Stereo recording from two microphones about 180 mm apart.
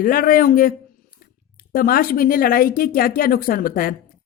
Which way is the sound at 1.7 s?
55° left (ahead or behind).